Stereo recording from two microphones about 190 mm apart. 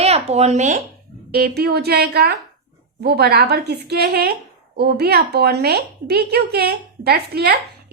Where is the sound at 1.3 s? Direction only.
55° right (ahead or behind).